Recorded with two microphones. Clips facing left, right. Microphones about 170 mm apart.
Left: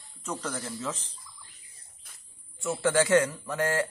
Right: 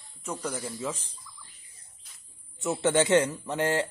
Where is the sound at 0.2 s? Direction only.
10° right (ahead or behind).